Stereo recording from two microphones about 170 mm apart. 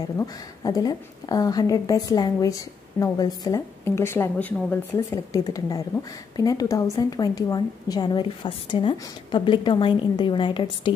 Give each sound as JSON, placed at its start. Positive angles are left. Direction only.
{"t": 0.2, "sound": "a woman's voice", "side_deg": 20}